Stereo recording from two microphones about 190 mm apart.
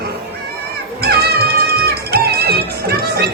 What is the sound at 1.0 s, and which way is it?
Music, 55° right (ahead or behind).